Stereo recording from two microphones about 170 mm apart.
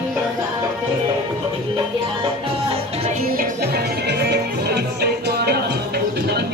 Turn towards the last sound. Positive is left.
turn(degrees=-70)  # may be behind; listen again after turning